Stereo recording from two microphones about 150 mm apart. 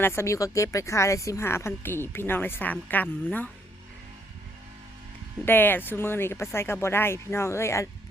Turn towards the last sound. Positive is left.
turn(degrees=20)  # may be behind; listen again after turning